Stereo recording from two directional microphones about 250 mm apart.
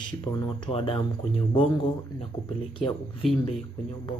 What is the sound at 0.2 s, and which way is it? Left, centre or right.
Speech, centre.